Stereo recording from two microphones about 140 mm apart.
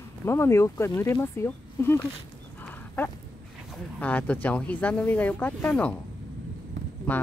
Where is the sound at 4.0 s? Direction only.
10° left (ahead or behind).